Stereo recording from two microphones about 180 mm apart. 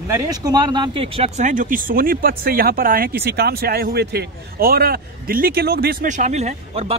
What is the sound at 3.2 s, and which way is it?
A man's voice, 65° right (ahead or behind).